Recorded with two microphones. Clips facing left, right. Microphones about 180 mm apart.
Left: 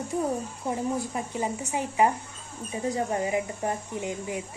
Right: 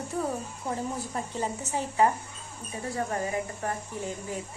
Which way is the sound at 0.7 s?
10° left (ahead or behind).